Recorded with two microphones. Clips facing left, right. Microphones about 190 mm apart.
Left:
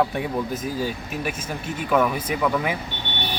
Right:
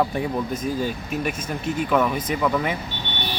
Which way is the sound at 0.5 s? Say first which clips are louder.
Right 2 dB; 5° left (ahead or behind).